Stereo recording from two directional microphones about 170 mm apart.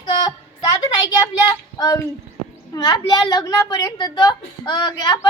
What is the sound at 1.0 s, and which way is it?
A woman's voice, 20° left (ahead or behind).